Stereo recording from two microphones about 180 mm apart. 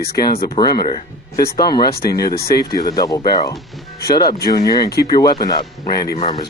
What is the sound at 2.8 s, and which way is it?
Speech, 20° left (ahead or behind).